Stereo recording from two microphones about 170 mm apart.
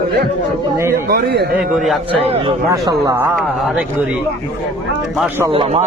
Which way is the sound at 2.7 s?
20° right (ahead or behind).